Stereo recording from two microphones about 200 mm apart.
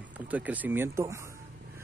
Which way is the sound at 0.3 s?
5° right (ahead or behind).